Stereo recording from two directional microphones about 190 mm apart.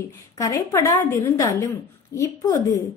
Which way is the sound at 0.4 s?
20° left (ahead or behind).